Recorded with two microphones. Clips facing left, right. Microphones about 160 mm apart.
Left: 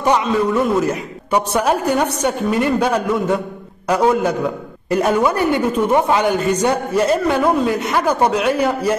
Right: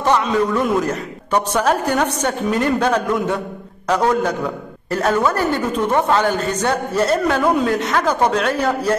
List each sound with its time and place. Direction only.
0.0 s a man's voice: 10° left (ahead or behind)